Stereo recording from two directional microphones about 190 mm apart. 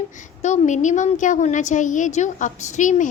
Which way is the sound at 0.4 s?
40° left (ahead or behind).